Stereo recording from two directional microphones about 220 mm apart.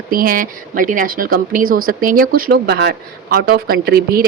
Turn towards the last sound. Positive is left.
turn(degrees=-45)  # may be behind; listen again after turning